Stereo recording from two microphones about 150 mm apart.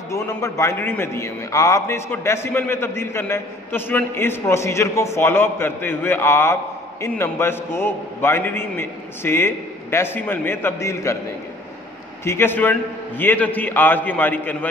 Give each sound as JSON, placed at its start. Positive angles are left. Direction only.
{"t": 0.1, "sound": "a man's voice", "side_deg": 20}
{"t": 12.3, "sound": "a man's voice", "side_deg": 15}